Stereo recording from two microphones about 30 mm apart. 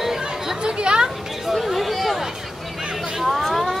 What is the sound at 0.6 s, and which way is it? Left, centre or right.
Chatter, right.